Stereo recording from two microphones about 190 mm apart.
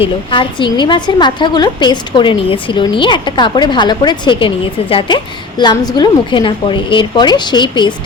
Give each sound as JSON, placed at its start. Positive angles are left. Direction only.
{"t": 0.3, "sound": "a woman's voice", "side_deg": 25}